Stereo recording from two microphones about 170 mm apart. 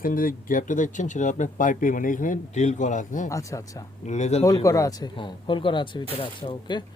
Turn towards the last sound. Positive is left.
turn(degrees=30)  # may be behind; listen again after turning